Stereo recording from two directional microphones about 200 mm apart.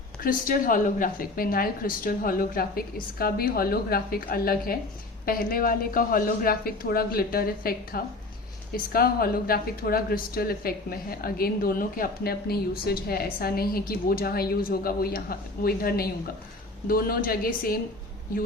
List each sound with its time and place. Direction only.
0.2 s a woman's voice: 45° left (ahead or behind)